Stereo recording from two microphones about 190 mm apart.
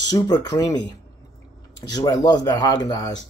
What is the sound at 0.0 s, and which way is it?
Speech, 20° left (ahead or behind).